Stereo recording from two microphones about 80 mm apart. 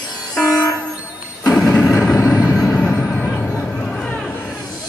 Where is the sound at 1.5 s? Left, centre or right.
Centre.